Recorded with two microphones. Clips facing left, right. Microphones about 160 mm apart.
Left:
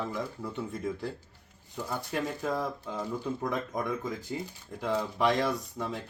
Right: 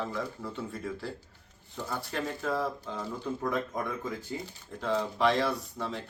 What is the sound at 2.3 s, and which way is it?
Speech, 15° left (ahead or behind).